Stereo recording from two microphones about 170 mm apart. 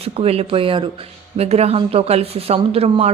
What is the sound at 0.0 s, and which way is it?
Speech, 35° right (ahead or behind).